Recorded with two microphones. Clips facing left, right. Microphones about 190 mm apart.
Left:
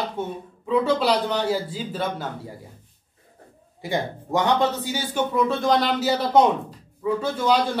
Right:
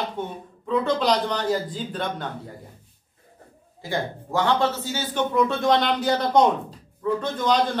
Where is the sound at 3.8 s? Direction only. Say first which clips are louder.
Left 2 dB; 15° left (ahead or behind).